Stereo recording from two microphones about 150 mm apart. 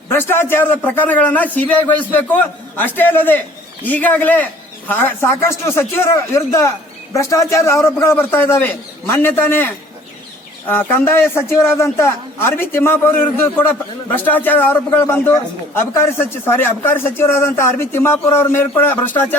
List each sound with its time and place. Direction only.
0.1 s speech: 15° left (ahead or behind)
10.7 s speech: 15° left (ahead or behind)